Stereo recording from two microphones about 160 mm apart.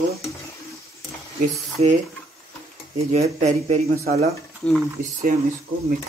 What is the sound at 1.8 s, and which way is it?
Speech, 40° right (ahead or behind).